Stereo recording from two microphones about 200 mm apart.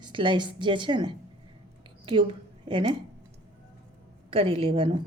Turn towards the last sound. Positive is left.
turn(degrees=-25)  # may be behind; listen again after turning